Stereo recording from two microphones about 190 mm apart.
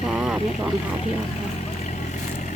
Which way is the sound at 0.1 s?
5° right (ahead or behind).